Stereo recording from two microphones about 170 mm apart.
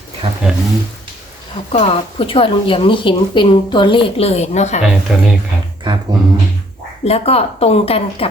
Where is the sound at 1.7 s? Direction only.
35° left (ahead or behind).